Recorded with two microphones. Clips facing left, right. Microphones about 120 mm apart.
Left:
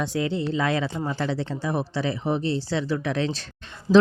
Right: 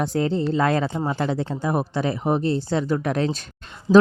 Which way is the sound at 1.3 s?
45° right (ahead or behind).